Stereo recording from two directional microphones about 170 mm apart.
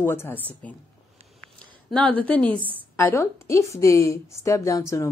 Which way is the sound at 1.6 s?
5° left (ahead or behind).